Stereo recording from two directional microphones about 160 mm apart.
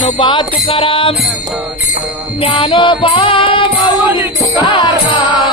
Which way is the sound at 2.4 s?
35° left (ahead or behind).